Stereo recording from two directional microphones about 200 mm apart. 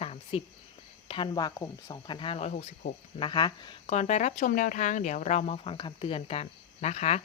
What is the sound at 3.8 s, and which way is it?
Speech, 35° left (ahead or behind).